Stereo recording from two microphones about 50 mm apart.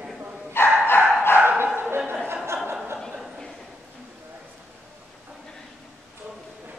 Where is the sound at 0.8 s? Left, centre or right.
Left.